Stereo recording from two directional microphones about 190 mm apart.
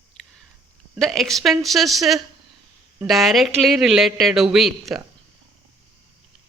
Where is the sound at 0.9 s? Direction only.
Centre (ahead or behind).